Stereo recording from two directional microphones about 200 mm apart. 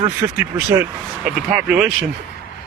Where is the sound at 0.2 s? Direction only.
15° right (ahead or behind).